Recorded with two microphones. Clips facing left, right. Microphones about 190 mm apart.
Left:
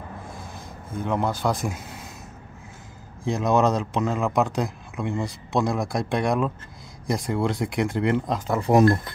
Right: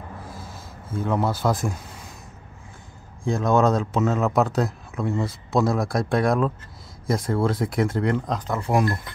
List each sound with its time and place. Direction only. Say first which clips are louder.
0.3 s a sound: left 1 dB; 15° left (ahead or behind)
1.0 s speech: right 1 dB; 5° right (ahead or behind)
3.3 s speech: right 1 dB; centre (ahead or behind)